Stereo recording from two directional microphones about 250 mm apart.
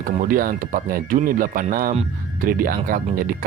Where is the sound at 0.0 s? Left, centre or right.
Right.